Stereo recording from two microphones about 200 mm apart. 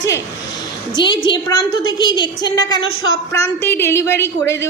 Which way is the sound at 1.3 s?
20° left (ahead or behind).